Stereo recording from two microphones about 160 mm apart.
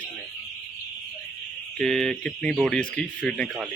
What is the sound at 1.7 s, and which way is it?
Speech, 5° left (ahead or behind).